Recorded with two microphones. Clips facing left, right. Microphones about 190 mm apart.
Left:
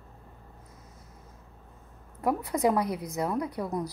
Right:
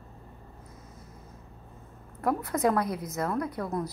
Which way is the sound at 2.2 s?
15° left (ahead or behind).